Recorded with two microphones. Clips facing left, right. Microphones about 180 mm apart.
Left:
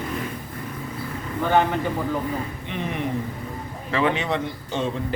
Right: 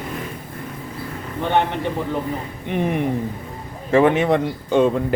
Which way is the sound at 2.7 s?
55° right (ahead or behind).